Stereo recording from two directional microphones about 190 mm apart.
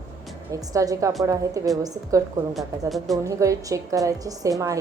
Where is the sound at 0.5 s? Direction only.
15° right (ahead or behind).